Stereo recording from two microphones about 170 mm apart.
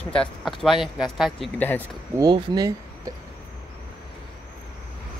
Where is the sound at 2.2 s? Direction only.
25° right (ahead or behind).